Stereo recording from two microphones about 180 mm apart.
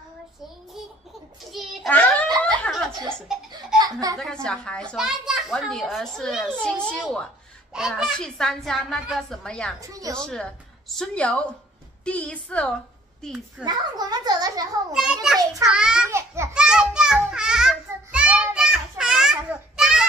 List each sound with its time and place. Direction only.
1.5 s a sound: centre (ahead or behind)
2.6 s laughter: centre (ahead or behind)
3.8 s speech: 20° right (ahead or behind)
4.2 s a child's voice: 5° left (ahead or behind)
9.8 s a child's voice: 20° right (ahead or behind)
10.1 s a woman's voice: 5° left (ahead or behind)
13.7 s a child's voice: 20° right (ahead or behind)
14.9 s a child's voice: 5° right (ahead or behind)
16.1 s a sound: 15° right (ahead or behind)
16.5 s a sound: 5° right (ahead or behind)
19.8 s children playing: 5° right (ahead or behind)